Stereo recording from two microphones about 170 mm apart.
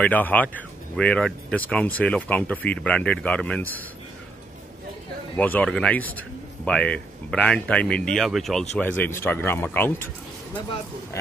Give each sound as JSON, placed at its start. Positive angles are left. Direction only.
{"t": 0.0, "sound": "speech", "side_deg": 10}
{"t": 5.3, "sound": "speech", "side_deg": 10}